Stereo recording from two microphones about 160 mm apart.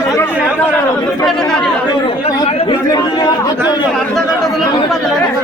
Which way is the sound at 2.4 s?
35° left (ahead or behind).